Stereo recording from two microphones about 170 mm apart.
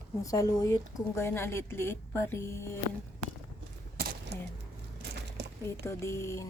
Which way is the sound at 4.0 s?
65° right (ahead or behind).